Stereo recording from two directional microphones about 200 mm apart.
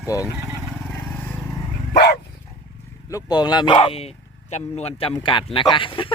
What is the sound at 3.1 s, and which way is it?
Speech, 20° left (ahead or behind).